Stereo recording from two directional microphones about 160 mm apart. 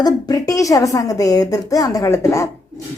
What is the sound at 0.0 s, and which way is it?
Speech, 25° left (ahead or behind).